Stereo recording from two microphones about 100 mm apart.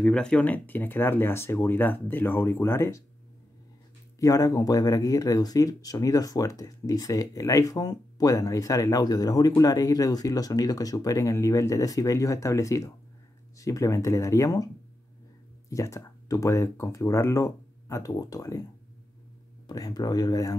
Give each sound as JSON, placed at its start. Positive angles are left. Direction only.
{"t": 0.0, "sound": "speech", "side_deg": 10}
{"t": 4.2, "sound": "speech", "side_deg": 35}
{"t": 15.7, "sound": "speech", "side_deg": 30}
{"t": 19.7, "sound": "speech", "side_deg": 40}